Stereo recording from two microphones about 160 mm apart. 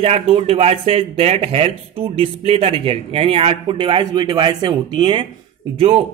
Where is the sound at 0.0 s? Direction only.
40° right (ahead or behind).